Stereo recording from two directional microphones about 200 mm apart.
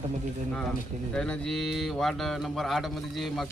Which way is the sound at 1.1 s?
5° left (ahead or behind).